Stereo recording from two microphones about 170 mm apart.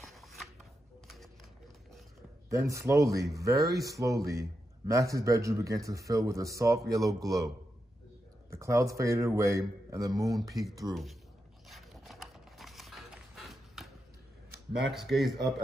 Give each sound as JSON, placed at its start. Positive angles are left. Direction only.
{"t": 0.0, "sound": "chopping", "side_deg": 0}
{"t": 2.5, "sound": "speech", "side_deg": -15}
{"t": 11.7, "sound": "a sound", "side_deg": 0}
{"t": 14.8, "sound": "speech", "side_deg": 0}